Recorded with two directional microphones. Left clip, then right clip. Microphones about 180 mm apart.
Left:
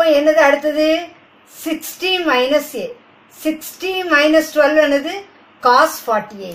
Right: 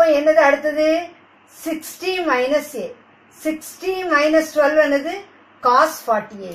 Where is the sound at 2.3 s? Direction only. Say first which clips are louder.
Left 2 dB; 5° left (ahead or behind).